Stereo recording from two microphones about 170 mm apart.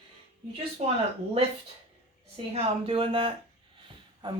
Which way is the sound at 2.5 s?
35° right (ahead or behind).